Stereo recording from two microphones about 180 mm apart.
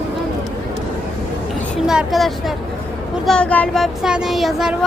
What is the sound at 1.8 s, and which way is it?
Speech, centre (ahead or behind).